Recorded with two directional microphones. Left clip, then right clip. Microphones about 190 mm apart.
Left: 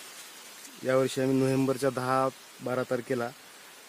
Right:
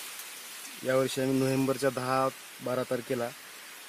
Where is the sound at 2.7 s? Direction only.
25° left (ahead or behind).